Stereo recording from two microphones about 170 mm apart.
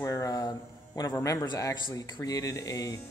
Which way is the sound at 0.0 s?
20° left (ahead or behind).